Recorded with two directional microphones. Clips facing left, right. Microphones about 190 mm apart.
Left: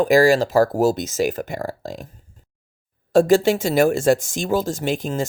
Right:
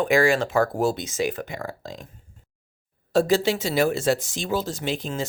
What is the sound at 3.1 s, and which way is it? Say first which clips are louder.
Speech: left 5 dB; 50° left (ahead or behind).